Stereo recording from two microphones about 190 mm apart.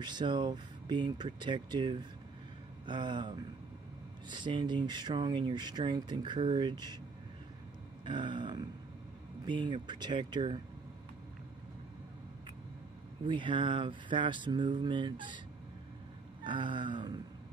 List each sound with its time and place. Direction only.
0.0 s speech: 25° right (ahead or behind)
8.0 s speech: 25° right (ahead or behind)
13.3 s speech: 25° right (ahead or behind)
16.4 s speech: 25° right (ahead or behind)